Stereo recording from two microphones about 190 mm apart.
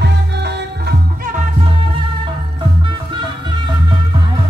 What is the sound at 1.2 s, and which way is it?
Music, 40° right (ahead or behind).